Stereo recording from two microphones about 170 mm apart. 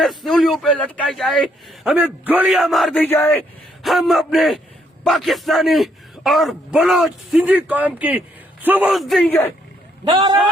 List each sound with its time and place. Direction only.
0.0 s a man's voice: centre (ahead or behind)
3.0 s speech: 10° left (ahead or behind)
3.8 s a man's voice: centre (ahead or behind)
8.9 s a man's voice: centre (ahead or behind)
10.0 s speech: 25° right (ahead or behind)